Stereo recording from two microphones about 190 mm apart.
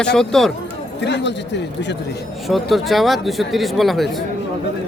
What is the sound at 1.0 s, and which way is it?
Speech, 65° left (ahead or behind).